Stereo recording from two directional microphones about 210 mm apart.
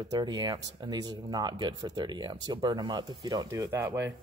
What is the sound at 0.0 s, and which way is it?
Speech, 20° right (ahead or behind).